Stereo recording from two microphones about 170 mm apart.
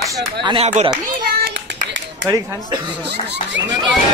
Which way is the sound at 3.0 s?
85° right.